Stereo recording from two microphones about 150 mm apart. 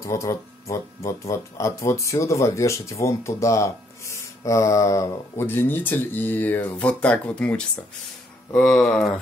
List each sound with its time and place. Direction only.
0.0 s speech: 20° left (ahead or behind); by 9.1 s 5° left (ahead or behind)